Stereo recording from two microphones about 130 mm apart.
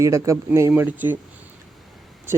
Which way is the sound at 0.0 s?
25° right (ahead or behind).